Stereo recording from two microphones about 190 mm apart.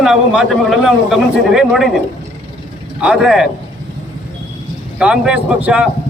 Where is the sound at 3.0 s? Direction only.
5° right (ahead or behind).